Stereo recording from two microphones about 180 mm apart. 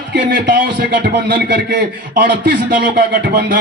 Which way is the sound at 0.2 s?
55° right (ahead or behind).